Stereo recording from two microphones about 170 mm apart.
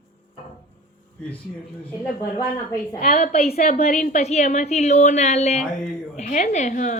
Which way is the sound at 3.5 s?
55° left (ahead or behind).